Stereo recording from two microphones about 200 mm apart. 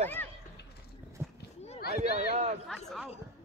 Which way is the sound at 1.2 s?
15° right (ahead or behind).